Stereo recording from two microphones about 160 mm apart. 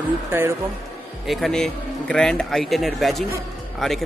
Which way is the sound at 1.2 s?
Centre (ahead or behind).